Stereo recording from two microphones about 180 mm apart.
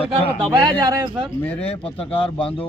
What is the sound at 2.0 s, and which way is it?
Speech, 5° left (ahead or behind).